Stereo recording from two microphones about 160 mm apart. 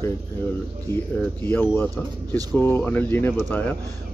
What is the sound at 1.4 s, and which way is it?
Speech, 15° left (ahead or behind).